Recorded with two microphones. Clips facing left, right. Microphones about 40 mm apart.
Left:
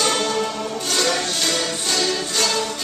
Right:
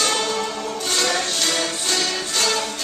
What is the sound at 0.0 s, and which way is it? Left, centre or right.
Music, centre.